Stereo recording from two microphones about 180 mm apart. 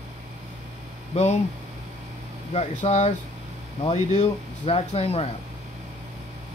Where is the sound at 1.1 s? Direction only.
35° left (ahead or behind).